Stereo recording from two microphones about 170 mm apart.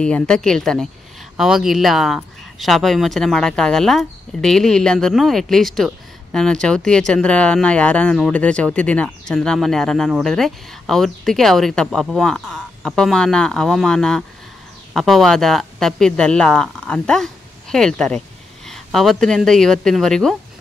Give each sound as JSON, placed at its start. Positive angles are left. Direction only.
{"t": 0.0, "sound": "speech", "side_deg": 5}